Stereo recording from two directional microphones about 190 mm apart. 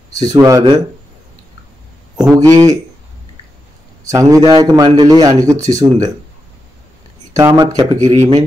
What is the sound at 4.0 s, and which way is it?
A man's voice, 15° right (ahead or behind).